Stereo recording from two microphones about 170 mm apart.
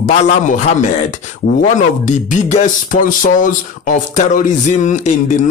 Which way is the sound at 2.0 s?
45° left (ahead or behind).